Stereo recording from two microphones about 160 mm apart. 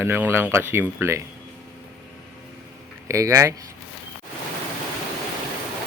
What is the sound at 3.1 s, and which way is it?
Speech, 20° right (ahead or behind).